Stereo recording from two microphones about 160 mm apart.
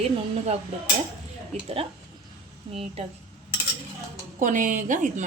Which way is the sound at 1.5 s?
40° right (ahead or behind).